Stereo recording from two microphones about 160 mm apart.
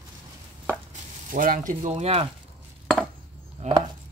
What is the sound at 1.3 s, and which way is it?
Speech, 60° right (ahead or behind).